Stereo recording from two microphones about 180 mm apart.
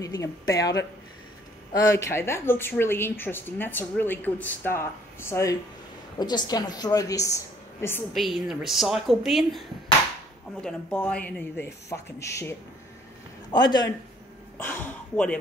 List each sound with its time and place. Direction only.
0.0 s speech: 20° left (ahead or behind)
8.1 s a woman's voice: centre (ahead or behind); by 13.8 s 25° left (ahead or behind)
14.6 s speech: 10° left (ahead or behind)